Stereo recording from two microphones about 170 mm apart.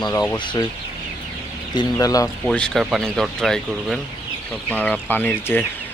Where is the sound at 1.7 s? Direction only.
25° left (ahead or behind).